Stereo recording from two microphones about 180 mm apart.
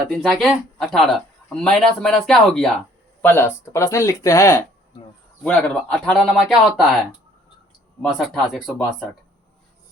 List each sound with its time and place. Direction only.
0.1 s speech: centre (ahead or behind)
5.4 s speech: 5° left (ahead or behind)
8.0 s speech: centre (ahead or behind)